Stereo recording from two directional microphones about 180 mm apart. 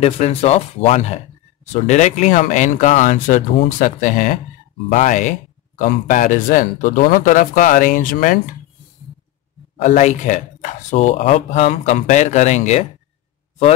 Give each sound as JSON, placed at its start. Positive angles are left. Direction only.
{"t": 0.0, "sound": "speech", "side_deg": 35}
{"t": 9.8, "sound": "speech", "side_deg": 40}